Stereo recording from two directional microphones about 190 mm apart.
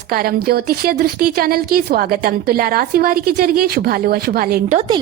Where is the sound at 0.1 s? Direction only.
50° right (ahead or behind).